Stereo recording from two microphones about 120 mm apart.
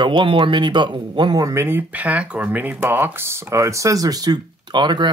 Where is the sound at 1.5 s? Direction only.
20° right (ahead or behind).